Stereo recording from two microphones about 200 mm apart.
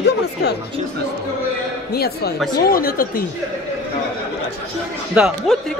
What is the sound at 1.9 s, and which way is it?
Speech, 50° left (ahead or behind).